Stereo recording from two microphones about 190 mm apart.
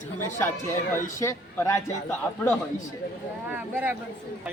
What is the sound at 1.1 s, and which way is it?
Speech, 15° left (ahead or behind).